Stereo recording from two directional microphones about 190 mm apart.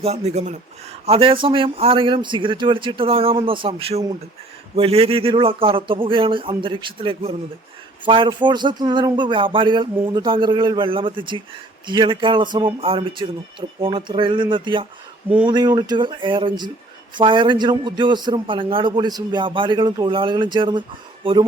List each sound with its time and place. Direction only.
0.0 s a man's voice: 35° right (ahead or behind)